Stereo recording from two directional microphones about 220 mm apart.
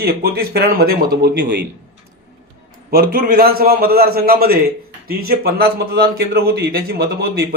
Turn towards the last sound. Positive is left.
turn(degrees=-45)  # may be behind; listen again after turning